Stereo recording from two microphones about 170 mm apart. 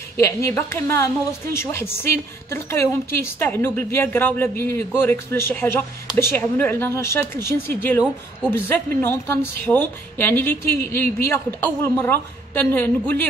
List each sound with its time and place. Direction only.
0.2 s a woman's voice: 15° left (ahead or behind)